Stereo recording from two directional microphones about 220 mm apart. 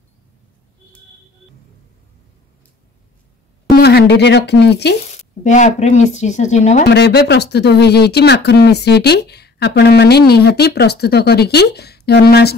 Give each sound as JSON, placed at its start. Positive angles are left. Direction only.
{"t": 3.7, "sound": "speech", "side_deg": 45}
{"t": 5.0, "sound": "speech", "side_deg": 30}
{"t": 6.9, "sound": "speech", "side_deg": 50}